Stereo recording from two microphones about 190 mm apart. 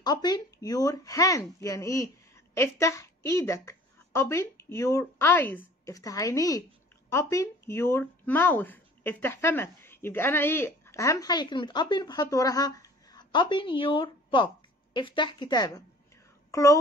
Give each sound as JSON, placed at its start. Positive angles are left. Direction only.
{"t": 0.0, "sound": "a woman's voice", "side_deg": 20}